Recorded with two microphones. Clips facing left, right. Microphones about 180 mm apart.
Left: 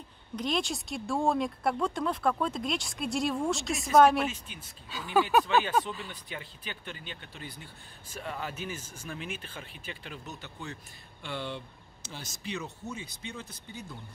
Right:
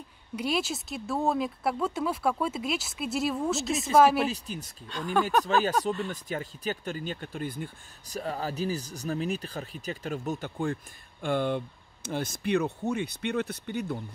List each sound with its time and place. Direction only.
0.4 s speech: 5° right (ahead or behind)
4.2 s speech: 40° right (ahead or behind); by 13.9 s 65° right (ahead or behind)